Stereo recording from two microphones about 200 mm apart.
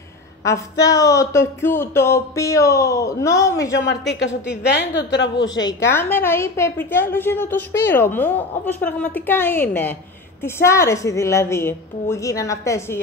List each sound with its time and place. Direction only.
0.4 s a woman's voice: 15° left (ahead or behind)
4.1 s a woman's voice: 65° left (ahead or behind)
5.5 s a woman's voice: 20° left (ahead or behind)